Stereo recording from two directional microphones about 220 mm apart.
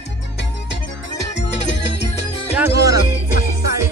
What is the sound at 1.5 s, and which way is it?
Music, 55° left (ahead or behind).